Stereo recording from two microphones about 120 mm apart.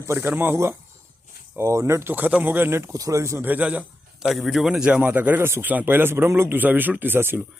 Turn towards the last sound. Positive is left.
turn(degrees=-20)  # may be behind; listen again after turning